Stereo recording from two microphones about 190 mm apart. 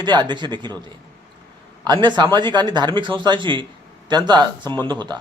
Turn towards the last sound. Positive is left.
turn(degrees=-25)  # may be behind; listen again after turning